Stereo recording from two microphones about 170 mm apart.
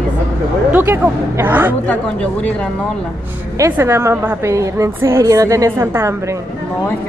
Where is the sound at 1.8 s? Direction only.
5° left (ahead or behind).